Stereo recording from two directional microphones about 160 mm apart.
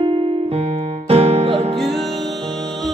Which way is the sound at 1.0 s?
40° right (ahead or behind).